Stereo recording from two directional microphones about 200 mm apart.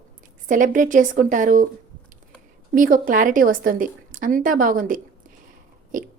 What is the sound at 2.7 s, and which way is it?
A woman's voice, 45° right (ahead or behind).